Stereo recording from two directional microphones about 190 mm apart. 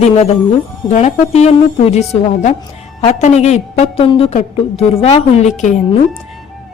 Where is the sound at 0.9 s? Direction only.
35° left (ahead or behind).